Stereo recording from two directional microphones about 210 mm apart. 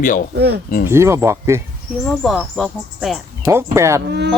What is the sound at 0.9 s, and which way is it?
Speech, 10° right (ahead or behind).